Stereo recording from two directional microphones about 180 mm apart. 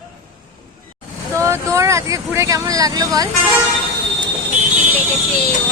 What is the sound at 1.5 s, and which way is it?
Speech, 15° right (ahead or behind).